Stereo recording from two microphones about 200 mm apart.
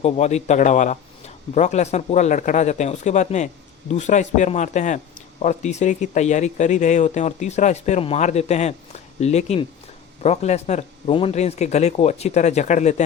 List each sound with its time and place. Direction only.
0.0 s speech: 35° left (ahead or behind)